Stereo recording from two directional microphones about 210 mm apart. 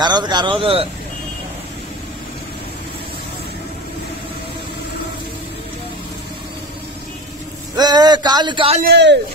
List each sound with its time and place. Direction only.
0.0 s speech: 20° right (ahead or behind)
7.7 s speech: 20° right (ahead or behind)
8.8 s speech: 55° right (ahead or behind)